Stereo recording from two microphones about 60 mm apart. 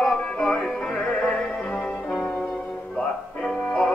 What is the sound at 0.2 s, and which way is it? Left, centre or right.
Music, centre.